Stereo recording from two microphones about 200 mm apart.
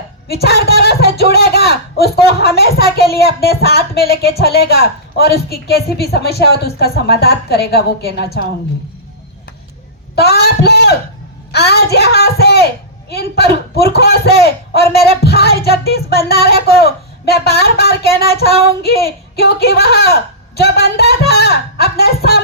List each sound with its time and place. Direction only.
0.3 s speech: 55° left (ahead or behind)
10.2 s a sound: 55° left (ahead or behind)
11.5 s speech: 55° left (ahead or behind)